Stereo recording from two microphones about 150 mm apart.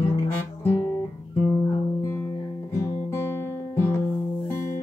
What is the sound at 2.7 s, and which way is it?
Guitar, 20° left (ahead or behind).